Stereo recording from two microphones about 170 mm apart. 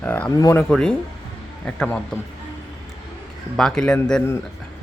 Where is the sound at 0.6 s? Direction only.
5° left (ahead or behind).